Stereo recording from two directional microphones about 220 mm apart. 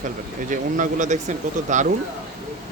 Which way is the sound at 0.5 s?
35° right (ahead or behind).